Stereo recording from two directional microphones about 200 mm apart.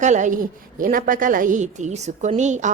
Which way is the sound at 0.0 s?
35° right (ahead or behind).